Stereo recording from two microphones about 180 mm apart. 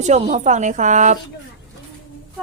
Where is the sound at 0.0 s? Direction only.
40° right (ahead or behind).